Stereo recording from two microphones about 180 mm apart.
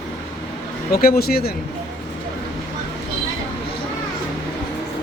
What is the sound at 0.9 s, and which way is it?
Speech, 55° left (ahead or behind).